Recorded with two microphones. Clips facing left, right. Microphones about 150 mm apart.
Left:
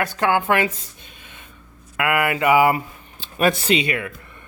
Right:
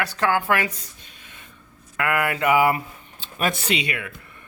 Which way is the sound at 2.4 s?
25° left (ahead or behind).